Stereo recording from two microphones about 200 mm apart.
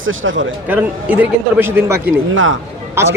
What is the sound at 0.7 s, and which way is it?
Speech, 10° right (ahead or behind).